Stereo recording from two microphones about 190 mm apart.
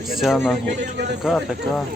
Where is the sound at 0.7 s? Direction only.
65° right (ahead or behind).